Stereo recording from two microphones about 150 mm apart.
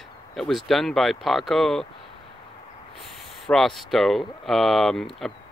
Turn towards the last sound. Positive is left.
turn(degrees=0)  # may be behind; listen again after turning